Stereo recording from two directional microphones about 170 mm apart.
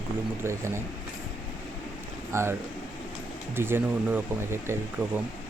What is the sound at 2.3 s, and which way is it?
Speech, 15° right (ahead or behind).